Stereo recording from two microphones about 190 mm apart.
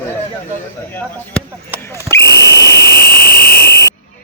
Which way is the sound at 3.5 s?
60° left (ahead or behind).